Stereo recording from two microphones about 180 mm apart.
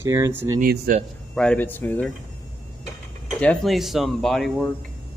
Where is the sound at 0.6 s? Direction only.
50° right (ahead or behind).